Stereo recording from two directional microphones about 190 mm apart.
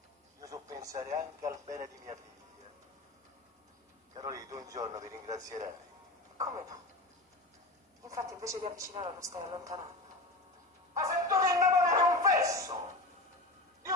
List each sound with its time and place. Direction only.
0.4 s speech: 15° right (ahead or behind)
4.1 s speech: 20° right (ahead or behind)
8.0 s speech: 15° right (ahead or behind)
10.9 s a sound: 15° right (ahead or behind)